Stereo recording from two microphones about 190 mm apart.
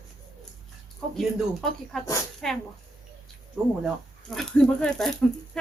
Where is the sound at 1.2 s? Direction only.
Centre (ahead or behind).